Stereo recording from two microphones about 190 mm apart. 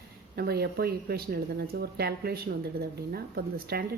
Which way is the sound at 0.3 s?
55° right (ahead or behind).